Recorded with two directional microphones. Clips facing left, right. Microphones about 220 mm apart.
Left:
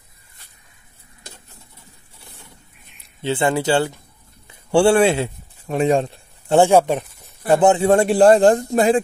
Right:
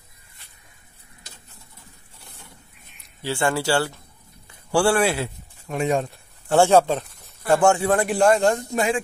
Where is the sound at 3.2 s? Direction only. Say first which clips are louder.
Left 4 dB; 20° left (ahead or behind).